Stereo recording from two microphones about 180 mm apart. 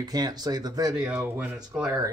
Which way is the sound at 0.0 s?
20° right (ahead or behind).